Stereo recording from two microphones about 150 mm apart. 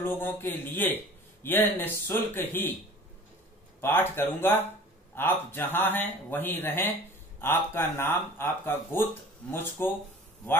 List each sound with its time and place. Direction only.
0.0 s speech: 15° left (ahead or behind)
3.8 s speech: 15° left (ahead or behind)